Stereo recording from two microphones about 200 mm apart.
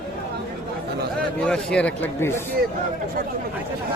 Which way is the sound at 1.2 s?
5° left (ahead or behind).